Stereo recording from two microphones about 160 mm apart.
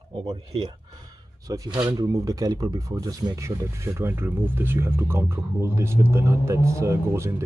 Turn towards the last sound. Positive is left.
turn(degrees=-15)  # may be behind; listen again after turning